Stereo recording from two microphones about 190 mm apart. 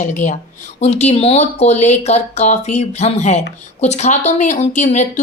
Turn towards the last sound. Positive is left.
turn(degrees=40)  # may be behind; listen again after turning